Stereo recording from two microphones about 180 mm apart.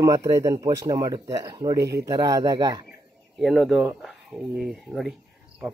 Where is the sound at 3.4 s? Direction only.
Centre (ahead or behind).